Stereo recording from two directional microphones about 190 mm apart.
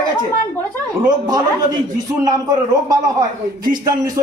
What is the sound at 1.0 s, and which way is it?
Speech, 20° right (ahead or behind).